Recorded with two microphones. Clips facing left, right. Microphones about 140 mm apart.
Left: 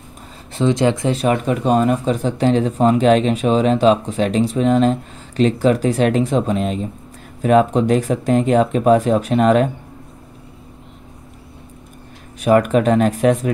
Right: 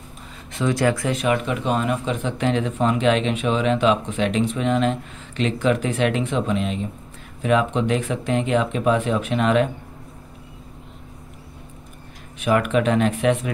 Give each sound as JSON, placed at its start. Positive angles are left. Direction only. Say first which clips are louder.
{"t": 0.5, "sound": "speech", "louder": "left 4 dB", "side_deg": 25}
{"t": 12.4, "sound": "speech", "louder": "left 5 dB", "side_deg": 40}